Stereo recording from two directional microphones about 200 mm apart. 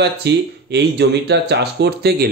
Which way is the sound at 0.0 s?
55° right (ahead or behind).